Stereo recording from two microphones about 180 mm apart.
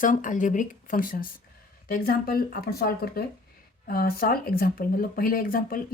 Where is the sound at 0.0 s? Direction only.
45° left (ahead or behind).